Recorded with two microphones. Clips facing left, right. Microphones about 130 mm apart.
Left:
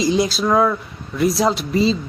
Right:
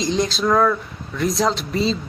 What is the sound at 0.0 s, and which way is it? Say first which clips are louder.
Speech: left 3 dB; 5° left (ahead or behind).